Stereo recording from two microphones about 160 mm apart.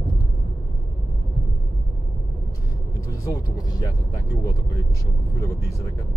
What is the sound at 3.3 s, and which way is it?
Speech, 20° left (ahead or behind).